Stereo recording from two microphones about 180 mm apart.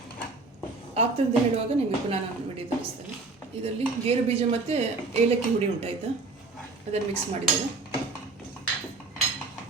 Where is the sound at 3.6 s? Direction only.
35° right (ahead or behind).